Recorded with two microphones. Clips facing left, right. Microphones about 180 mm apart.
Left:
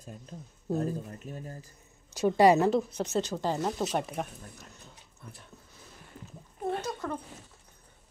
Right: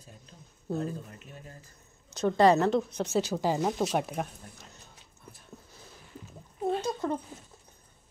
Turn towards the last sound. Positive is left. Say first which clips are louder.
# right 4 dB
turn(degrees=-25)  # may be behind; listen again after turning